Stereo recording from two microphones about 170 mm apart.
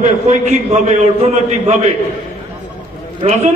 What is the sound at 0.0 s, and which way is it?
A man's voice, 45° right (ahead or behind).